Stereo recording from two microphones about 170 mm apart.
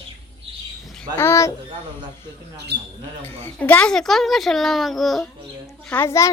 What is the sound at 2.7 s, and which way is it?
Speech, 80° right.